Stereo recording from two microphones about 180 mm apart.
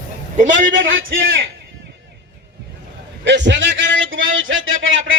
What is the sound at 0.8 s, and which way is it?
Speech, 90° right.